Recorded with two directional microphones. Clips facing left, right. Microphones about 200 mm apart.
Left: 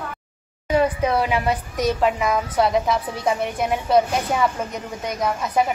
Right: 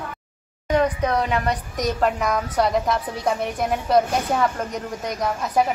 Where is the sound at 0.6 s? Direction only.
5° left (ahead or behind).